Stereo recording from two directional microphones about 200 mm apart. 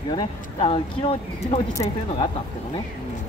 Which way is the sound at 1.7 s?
15° left (ahead or behind).